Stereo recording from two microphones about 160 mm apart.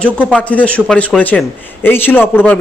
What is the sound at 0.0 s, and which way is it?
A man's voice, 10° left (ahead or behind).